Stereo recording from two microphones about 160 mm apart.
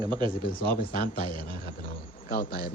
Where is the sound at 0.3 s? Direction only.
70° left (ahead or behind).